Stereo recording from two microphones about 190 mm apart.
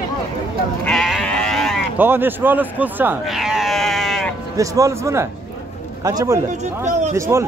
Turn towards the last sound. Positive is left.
turn(degrees=-15)  # may be behind; listen again after turning